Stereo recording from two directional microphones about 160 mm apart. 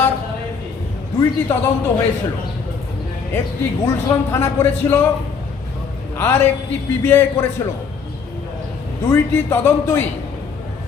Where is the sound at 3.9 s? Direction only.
15° left (ahead or behind).